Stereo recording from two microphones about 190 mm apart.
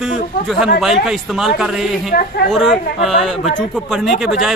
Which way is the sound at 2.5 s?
Centre (ahead or behind).